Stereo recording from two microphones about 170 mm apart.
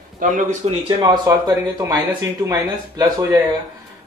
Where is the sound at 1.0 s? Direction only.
25° right (ahead or behind).